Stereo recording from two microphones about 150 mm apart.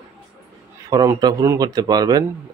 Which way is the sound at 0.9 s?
25° right (ahead or behind).